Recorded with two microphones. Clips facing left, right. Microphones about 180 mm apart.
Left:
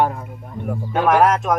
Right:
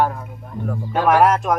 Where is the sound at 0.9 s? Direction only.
Centre (ahead or behind).